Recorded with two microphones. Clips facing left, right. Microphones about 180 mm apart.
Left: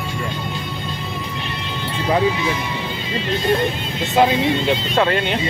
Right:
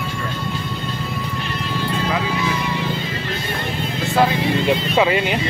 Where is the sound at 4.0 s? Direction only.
20° left (ahead or behind).